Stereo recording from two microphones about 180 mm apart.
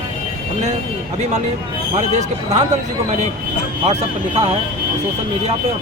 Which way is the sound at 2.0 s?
40° right (ahead or behind).